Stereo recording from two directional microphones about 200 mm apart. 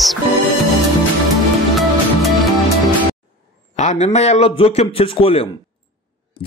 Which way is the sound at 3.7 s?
35° left (ahead or behind).